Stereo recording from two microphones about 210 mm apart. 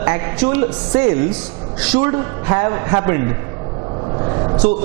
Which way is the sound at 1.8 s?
10° right (ahead or behind).